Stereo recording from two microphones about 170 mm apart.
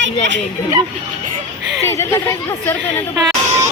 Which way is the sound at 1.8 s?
15° left (ahead or behind).